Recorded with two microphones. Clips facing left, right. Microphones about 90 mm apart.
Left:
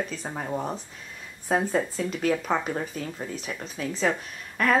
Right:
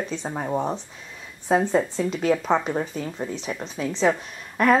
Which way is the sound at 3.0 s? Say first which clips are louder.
Right 4 dB; 15° right (ahead or behind).